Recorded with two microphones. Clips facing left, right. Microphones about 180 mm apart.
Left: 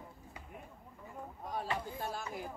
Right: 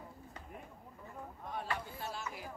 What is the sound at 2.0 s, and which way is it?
Chop, 50° left (ahead or behind).